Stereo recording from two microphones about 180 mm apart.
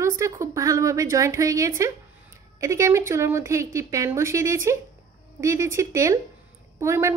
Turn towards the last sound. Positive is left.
turn(degrees=-15)  # may be behind; listen again after turning